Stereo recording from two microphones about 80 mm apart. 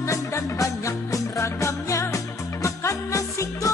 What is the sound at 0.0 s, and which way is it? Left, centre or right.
Music, left.